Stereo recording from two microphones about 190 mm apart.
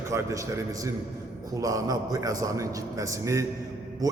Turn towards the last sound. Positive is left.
turn(degrees=-15)  # may be behind; listen again after turning